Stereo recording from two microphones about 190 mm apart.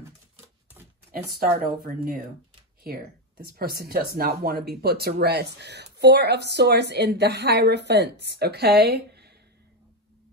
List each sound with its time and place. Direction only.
1.1 s a woman's voice: 55° right (ahead or behind)